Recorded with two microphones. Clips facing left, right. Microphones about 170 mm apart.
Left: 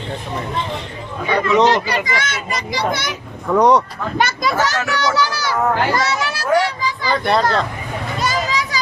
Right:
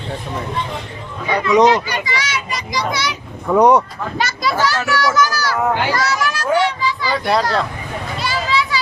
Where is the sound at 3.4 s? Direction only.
10° right (ahead or behind).